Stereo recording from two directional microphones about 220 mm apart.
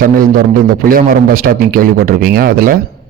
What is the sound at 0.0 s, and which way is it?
Speech, 40° right (ahead or behind).